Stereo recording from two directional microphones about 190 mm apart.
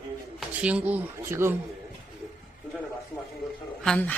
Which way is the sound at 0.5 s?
5° right (ahead or behind).